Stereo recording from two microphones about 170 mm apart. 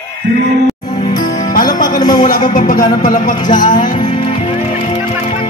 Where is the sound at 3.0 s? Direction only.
55° left (ahead or behind).